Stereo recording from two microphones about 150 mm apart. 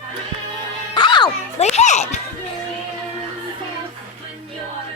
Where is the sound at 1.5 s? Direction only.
45° left (ahead or behind).